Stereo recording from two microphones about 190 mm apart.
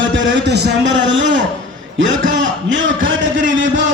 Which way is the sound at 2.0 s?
80° right.